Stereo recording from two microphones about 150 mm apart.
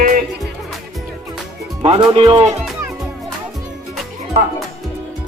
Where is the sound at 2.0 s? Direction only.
35° right (ahead or behind).